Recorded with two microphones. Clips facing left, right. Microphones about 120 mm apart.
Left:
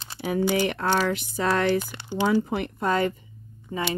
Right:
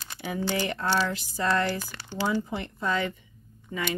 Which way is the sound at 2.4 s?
60° left (ahead or behind).